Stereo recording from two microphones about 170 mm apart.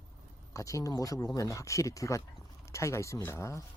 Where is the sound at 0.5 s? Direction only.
20° left (ahead or behind).